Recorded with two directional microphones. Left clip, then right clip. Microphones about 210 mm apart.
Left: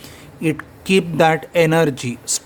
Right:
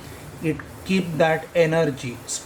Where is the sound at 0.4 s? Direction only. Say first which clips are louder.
Left 6 dB; 55° left (ahead or behind).